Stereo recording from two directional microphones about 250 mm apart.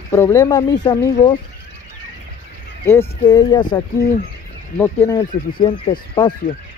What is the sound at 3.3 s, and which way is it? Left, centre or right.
Speech, centre.